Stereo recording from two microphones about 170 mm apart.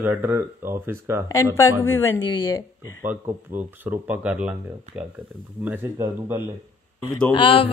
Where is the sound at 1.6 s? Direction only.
15° left (ahead or behind).